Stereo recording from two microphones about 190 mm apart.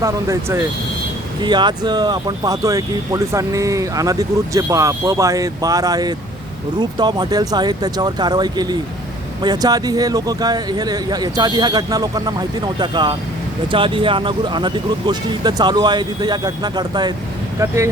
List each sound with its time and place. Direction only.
0.0 s speech: 15° right (ahead or behind)